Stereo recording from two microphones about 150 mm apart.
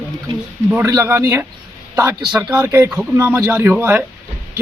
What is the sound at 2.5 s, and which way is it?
A man's voice, 15° right (ahead or behind).